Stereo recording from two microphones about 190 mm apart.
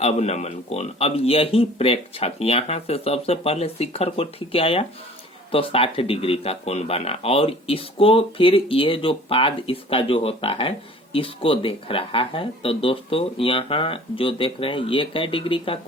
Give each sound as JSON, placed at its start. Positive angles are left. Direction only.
{"t": 0.0, "sound": "speech", "side_deg": 35}